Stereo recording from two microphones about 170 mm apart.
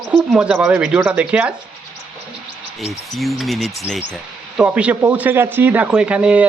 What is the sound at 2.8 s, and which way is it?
Speech, centre (ahead or behind).